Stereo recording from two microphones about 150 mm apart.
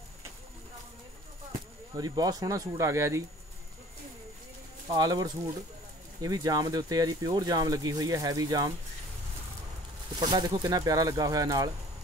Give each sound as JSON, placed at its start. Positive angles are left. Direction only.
{"t": 2.0, "sound": "speech", "side_deg": -25}
{"t": 4.8, "sound": "speech", "side_deg": -30}
{"t": 10.3, "sound": "speech", "side_deg": -30}